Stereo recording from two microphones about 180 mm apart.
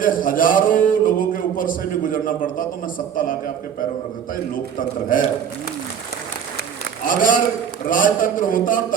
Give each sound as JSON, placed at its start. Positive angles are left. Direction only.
{"t": 0.0, "sound": "speech", "side_deg": 50}
{"t": 4.5, "sound": "speech", "side_deg": 50}
{"t": 7.2, "sound": "speech", "side_deg": 50}